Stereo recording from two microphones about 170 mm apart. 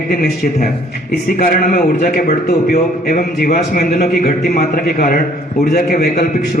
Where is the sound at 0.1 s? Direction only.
60° left (ahead or behind).